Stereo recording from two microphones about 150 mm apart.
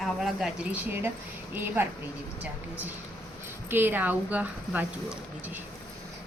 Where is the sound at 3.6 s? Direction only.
15° right (ahead or behind).